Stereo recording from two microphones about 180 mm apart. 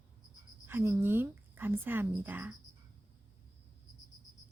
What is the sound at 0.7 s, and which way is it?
A woman's voice, 15° right (ahead or behind).